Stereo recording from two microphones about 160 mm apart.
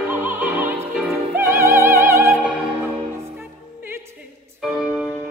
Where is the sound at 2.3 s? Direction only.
5° right (ahead or behind).